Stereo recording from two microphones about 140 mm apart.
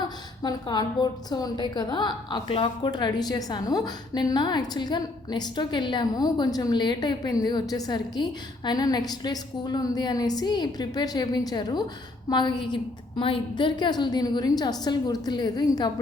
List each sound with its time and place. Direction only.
0.0 s a woman's voice: 30° left (ahead or behind)